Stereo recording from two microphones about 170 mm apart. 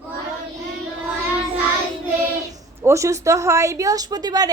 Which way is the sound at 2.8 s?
15° right (ahead or behind).